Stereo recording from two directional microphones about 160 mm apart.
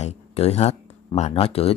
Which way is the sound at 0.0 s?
40° left (ahead or behind).